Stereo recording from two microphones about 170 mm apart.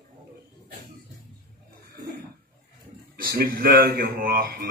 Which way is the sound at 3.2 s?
60° right (ahead or behind).